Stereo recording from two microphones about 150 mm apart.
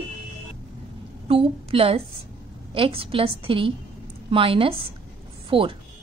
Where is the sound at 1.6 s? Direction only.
40° right (ahead or behind).